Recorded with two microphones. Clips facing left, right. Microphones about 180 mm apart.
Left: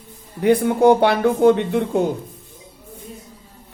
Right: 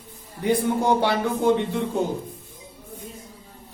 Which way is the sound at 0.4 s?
60° left (ahead or behind).